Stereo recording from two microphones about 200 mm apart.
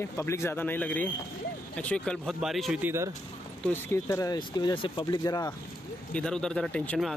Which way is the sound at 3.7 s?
15° left (ahead or behind).